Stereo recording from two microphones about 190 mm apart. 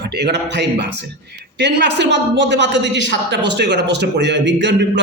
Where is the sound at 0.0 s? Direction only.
60° right (ahead or behind).